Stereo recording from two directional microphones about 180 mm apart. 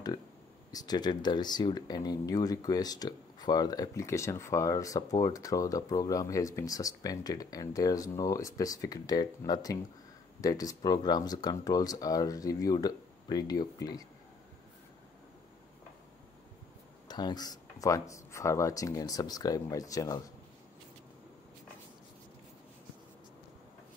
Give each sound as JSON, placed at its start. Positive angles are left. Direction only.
{"t": 0.7, "sound": "speech", "side_deg": 20}
{"t": 17.1, "sound": "speech", "side_deg": 25}